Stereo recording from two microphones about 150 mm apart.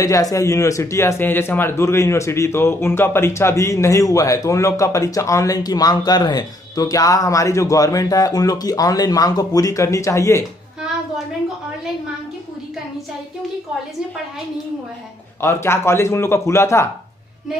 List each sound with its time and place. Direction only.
0.0 s a man's voice: 25° left (ahead or behind)
15.4 s speech: 15° left (ahead or behind)